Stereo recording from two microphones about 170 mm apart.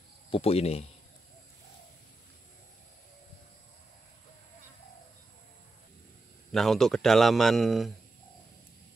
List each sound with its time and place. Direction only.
0.3 s speech: 35° left (ahead or behind)
6.5 s a man's voice: centre (ahead or behind)